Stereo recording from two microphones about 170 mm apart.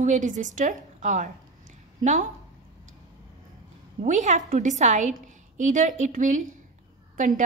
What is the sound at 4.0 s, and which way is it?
A woman's voice, 45° right (ahead or behind).